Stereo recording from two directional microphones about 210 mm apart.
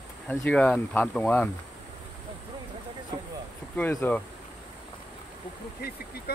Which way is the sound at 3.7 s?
10° left (ahead or behind).